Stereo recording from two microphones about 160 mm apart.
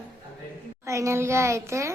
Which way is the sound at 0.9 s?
20° right (ahead or behind).